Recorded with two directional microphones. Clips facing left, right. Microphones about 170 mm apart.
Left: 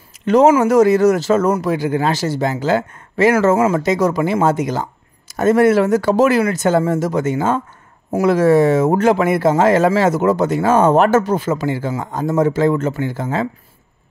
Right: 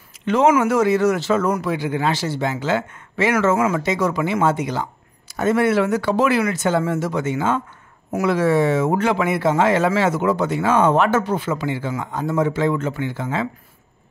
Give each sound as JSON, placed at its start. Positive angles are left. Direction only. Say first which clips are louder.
{"t": 0.2, "sound": "speech", "louder": "left 5 dB", "side_deg": 40}